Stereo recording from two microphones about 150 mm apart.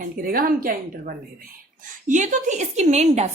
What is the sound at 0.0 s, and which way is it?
A woman's voice, 75° right (ahead or behind).